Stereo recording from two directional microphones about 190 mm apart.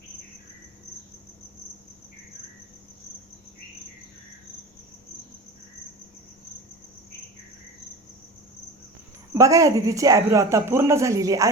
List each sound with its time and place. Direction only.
9.3 s speech: 15° right (ahead or behind)